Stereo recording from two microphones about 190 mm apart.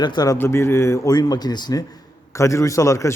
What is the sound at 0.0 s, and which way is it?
A man's voice, 20° left (ahead or behind).